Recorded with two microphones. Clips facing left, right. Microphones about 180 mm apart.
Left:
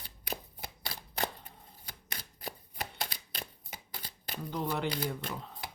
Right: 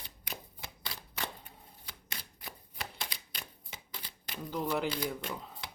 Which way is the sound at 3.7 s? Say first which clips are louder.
Left 2 dB; 45° left (ahead or behind).